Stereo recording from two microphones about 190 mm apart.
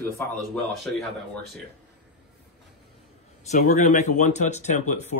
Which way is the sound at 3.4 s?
40° left (ahead or behind).